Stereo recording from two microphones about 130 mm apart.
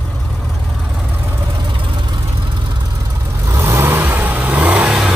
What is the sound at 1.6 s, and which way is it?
Vehicle, 40° right (ahead or behind).